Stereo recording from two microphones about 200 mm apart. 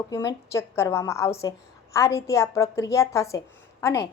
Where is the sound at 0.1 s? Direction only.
15° left (ahead or behind).